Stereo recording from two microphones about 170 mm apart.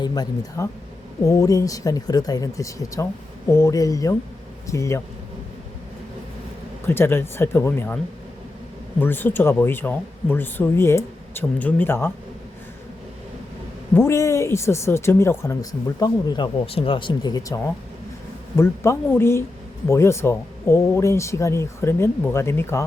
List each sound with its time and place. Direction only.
0.0 s speech: 25° left (ahead or behind)
6.8 s speech: 15° left (ahead or behind)
9.0 s speech: 10° left (ahead or behind)
13.9 s speech: 15° left (ahead or behind)
16.0 s speech: 25° left (ahead or behind)